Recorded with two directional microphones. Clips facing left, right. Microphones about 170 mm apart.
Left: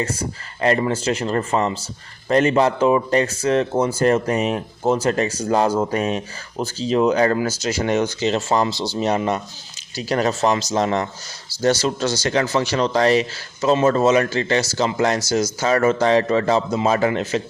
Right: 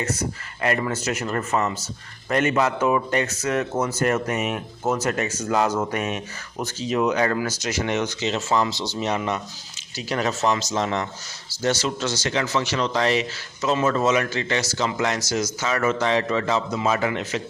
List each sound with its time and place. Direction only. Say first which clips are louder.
0.0 s speech: left 2 dB; 30° left (ahead or behind)